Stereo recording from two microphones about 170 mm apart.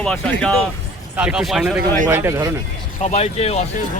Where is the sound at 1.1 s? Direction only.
5° right (ahead or behind).